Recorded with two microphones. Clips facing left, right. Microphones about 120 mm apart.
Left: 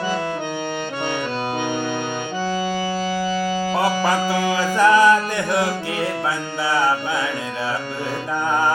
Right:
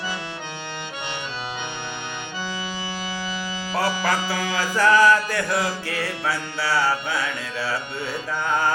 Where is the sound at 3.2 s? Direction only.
45° left (ahead or behind).